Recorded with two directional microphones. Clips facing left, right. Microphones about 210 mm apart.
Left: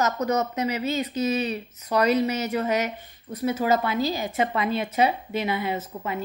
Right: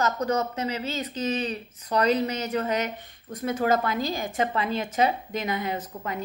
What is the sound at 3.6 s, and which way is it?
Speech, 50° right (ahead or behind).